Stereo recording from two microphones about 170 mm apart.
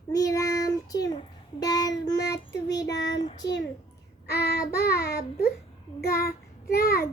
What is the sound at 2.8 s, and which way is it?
Child singing, 90° left.